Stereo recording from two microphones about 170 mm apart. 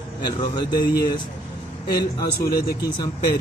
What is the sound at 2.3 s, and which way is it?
Speech, 65° left (ahead or behind).